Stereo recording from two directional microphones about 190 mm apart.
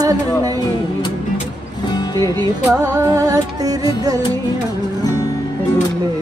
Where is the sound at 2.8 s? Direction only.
15° right (ahead or behind).